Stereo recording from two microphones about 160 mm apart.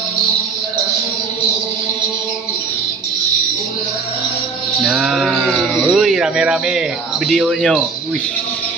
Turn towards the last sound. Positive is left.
turn(degrees=0)  # may be behind; listen again after turning